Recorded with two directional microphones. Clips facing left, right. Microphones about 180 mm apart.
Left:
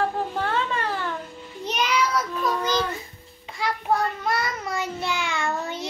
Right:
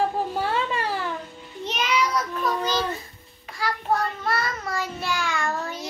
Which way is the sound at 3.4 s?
20° left (ahead or behind).